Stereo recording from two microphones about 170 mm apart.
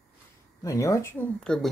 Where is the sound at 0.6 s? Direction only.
20° left (ahead or behind).